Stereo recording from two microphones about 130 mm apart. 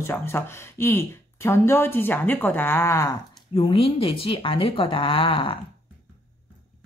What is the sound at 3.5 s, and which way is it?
Speech, 45° left (ahead or behind).